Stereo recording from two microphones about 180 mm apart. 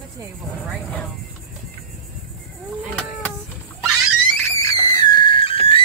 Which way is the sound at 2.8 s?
Centre (ahead or behind).